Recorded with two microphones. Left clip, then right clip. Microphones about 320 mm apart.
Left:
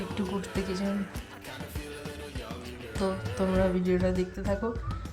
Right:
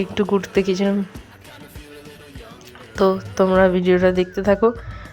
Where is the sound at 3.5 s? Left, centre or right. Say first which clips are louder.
Right 12 dB; right.